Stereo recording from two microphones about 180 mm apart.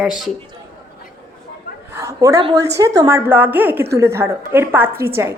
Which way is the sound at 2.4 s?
20° right (ahead or behind).